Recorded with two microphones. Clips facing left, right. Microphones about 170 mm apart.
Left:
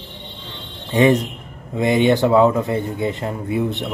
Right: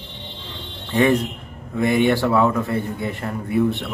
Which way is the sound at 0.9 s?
20° left (ahead or behind).